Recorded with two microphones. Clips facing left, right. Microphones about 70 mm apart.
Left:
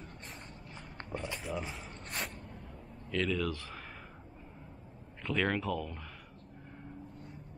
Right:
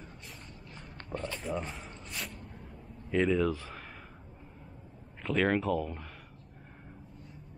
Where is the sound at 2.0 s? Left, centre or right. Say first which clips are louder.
Left 6 dB; left.